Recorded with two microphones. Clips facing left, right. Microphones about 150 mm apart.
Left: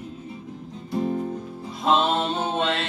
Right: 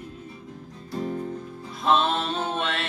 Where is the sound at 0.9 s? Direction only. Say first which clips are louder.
Left 4 dB; 25° left (ahead or behind).